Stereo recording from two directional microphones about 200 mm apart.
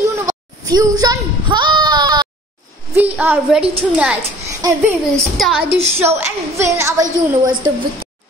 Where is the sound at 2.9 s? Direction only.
10° right (ahead or behind).